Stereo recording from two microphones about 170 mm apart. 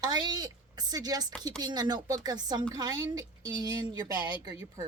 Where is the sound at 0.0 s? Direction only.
25° right (ahead or behind).